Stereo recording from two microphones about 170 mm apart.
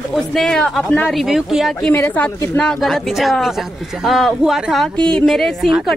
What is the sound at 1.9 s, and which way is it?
Speech, 10° left (ahead or behind).